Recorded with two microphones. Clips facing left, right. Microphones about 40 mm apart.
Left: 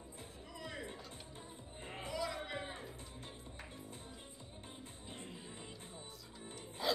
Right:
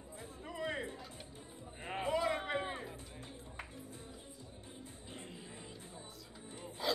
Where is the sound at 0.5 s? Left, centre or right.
Right.